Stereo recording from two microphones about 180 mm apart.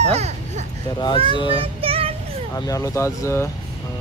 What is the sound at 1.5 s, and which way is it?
Child singing, 30° right (ahead or behind).